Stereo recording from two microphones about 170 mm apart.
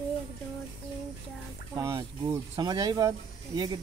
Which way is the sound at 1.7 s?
20° right (ahead or behind).